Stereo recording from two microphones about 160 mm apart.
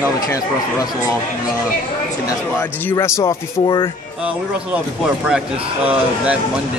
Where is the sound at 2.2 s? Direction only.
15° left (ahead or behind).